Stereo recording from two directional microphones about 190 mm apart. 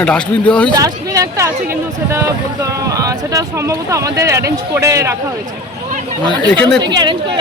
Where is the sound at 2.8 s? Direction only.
20° right (ahead or behind).